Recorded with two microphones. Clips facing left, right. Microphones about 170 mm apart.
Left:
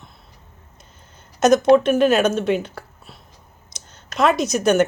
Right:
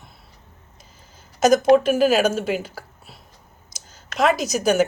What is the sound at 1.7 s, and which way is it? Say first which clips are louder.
A woman's voice: left 1 dB; 5° right (ahead or behind).